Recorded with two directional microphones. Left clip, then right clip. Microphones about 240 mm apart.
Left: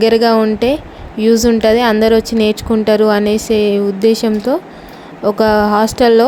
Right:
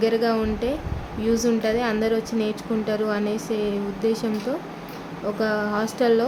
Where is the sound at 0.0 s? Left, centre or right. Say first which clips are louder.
Left 11 dB; left.